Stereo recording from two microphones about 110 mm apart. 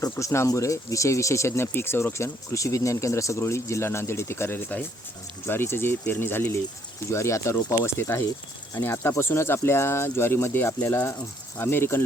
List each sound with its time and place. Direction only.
0.0 s speech: 25° left (ahead or behind)